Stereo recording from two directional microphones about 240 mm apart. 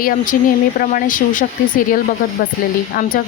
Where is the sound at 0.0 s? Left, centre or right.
Left.